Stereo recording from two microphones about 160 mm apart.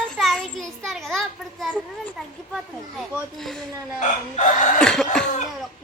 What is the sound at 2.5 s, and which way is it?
Speech, centre (ahead or behind).